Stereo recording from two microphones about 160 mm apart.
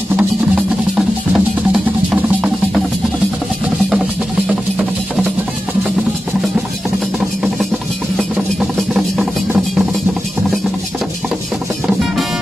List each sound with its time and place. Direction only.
0.1 s music: 10° right (ahead or behind)
4.5 s music: centre (ahead or behind)
8.2 s vehicle: centre (ahead or behind)